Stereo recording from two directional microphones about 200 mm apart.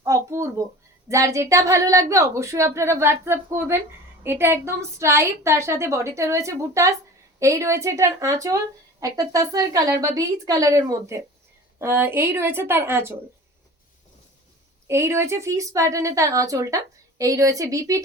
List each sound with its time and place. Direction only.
0.0 s a sound: 15° right (ahead or behind)
1.0 s speech: 15° right (ahead or behind)
14.8 s speech: 15° right (ahead or behind)